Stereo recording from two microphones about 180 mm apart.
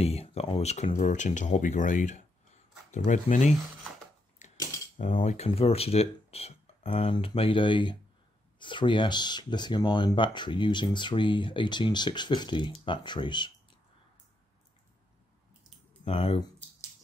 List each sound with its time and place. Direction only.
0.0 s speech: 35° left (ahead or behind)
4.4 s mechanisms: 40° left (ahead or behind)
5.1 s speech: 35° left (ahead or behind)
16.0 s speech: 30° left (ahead or behind)